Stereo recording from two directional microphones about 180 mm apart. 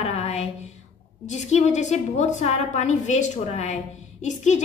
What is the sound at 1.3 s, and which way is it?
A woman's voice, 40° left (ahead or behind).